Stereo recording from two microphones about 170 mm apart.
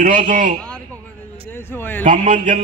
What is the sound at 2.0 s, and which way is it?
Speech, 50° right (ahead or behind).